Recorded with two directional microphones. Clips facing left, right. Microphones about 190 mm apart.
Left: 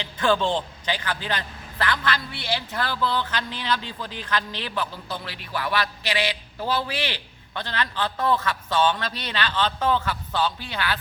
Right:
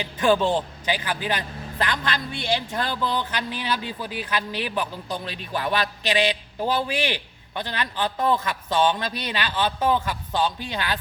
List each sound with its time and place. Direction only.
0.0 s speech: 10° right (ahead or behind)